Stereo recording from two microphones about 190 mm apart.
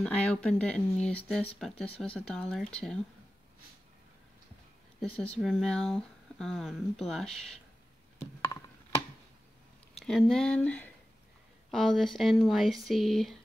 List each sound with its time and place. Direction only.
0.0 s speech: 5° left (ahead or behind)
5.4 s speech: centre (ahead or behind)
9.9 s speech: centre (ahead or behind)